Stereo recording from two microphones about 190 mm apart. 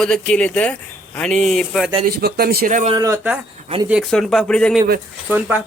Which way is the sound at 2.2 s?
55° right (ahead or behind).